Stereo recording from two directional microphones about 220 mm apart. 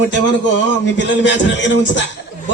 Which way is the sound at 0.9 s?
55° left (ahead or behind).